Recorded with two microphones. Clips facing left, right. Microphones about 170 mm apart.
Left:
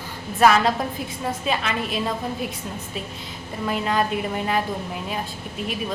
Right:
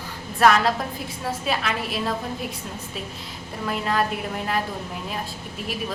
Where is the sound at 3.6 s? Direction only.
Centre (ahead or behind).